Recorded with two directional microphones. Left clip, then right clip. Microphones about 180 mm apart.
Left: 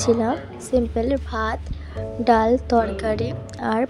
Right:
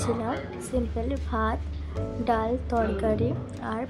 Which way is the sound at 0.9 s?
35° left (ahead or behind).